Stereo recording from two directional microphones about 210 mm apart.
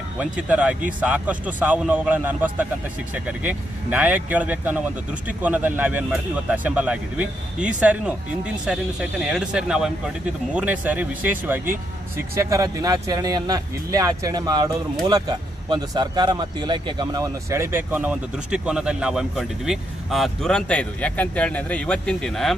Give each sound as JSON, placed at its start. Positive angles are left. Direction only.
{"t": 0.2, "sound": "speech", "side_deg": -5}